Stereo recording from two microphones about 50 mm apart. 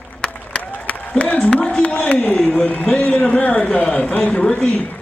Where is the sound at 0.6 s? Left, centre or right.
Left.